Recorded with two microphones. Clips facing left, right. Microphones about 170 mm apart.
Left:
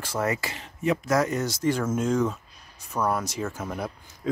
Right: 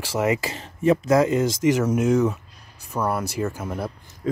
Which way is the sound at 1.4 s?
90° right.